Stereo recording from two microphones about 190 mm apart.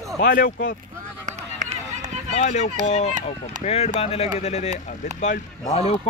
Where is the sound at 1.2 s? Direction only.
40° right (ahead or behind).